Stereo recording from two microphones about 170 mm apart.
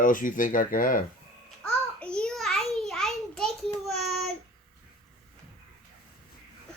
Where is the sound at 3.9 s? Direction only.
Centre (ahead or behind).